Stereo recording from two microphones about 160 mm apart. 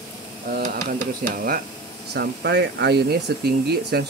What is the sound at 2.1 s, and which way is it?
Speech, 90° right.